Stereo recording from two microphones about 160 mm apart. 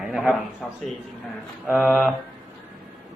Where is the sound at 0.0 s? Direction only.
5° right (ahead or behind).